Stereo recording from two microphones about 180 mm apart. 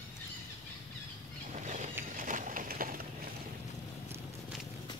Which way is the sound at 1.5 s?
40° right (ahead or behind).